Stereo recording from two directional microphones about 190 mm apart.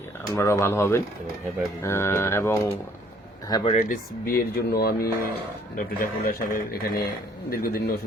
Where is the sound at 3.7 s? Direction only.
45° left (ahead or behind).